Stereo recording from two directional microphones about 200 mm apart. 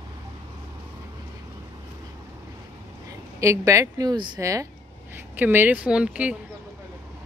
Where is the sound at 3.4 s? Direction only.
15° right (ahead or behind).